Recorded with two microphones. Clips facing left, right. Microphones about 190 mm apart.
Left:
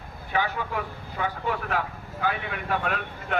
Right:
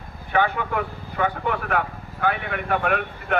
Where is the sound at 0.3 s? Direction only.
60° right (ahead or behind).